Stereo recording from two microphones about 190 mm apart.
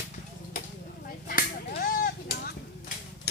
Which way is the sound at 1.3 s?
50° left (ahead or behind).